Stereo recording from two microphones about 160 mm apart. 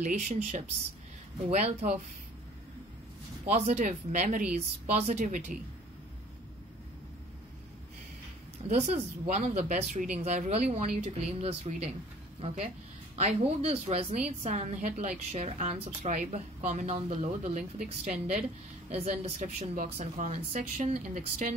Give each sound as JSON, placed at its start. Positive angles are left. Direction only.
{"t": 0.0, "sound": "a woman's voice", "side_deg": -50}
{"t": 3.4, "sound": "a woman's voice", "side_deg": -45}
{"t": 8.6, "sound": "a woman's voice", "side_deg": -45}